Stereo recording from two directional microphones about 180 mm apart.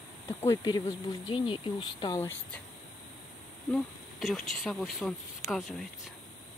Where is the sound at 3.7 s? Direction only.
Centre (ahead or behind).